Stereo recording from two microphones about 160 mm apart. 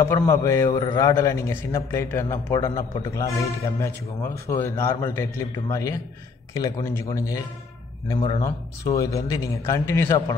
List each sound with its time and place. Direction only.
0.0 s a man's voice: 20° left (ahead or behind)
8.1 s speech: 30° left (ahead or behind); by 10.2 s 15° left (ahead or behind)